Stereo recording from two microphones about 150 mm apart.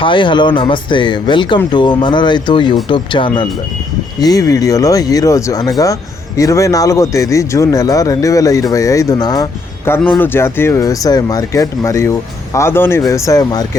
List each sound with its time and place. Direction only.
0.0 s speech: 35° left (ahead or behind)